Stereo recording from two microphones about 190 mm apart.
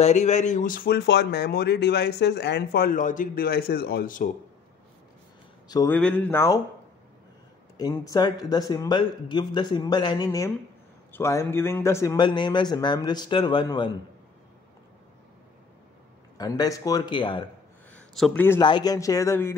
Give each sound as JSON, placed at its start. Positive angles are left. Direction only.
{"t": 0.0, "sound": "speech", "side_deg": 40}
{"t": 5.7, "sound": "speech", "side_deg": 20}
{"t": 5.9, "sound": "speech", "side_deg": 5}
{"t": 7.7, "sound": "speech", "side_deg": 20}
{"t": 16.3, "sound": "speech", "side_deg": 20}
{"t": 17.9, "sound": "a sound", "side_deg": 5}
{"t": 18.6, "sound": "speech", "side_deg": 25}